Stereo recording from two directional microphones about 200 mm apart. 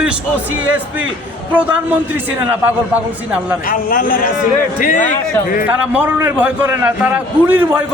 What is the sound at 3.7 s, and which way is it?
Speech, 45° left (ahead or behind).